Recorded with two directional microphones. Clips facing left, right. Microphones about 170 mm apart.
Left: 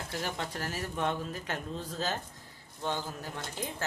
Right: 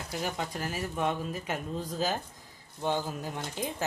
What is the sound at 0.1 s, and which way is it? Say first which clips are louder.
Speech: right 3 dB; 15° right (ahead or behind).